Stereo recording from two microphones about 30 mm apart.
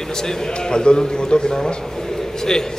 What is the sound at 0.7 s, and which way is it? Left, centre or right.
A man's voice, left.